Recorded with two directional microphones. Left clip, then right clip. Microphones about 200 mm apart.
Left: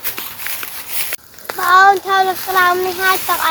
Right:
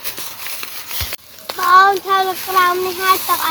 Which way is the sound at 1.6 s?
20° left (ahead or behind).